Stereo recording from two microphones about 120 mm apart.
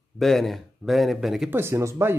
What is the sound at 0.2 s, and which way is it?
Speech, centre (ahead or behind).